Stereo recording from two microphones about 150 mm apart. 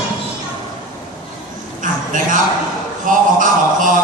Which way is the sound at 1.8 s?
60° right (ahead or behind).